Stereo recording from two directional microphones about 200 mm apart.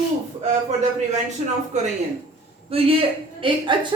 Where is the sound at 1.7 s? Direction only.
35° right (ahead or behind).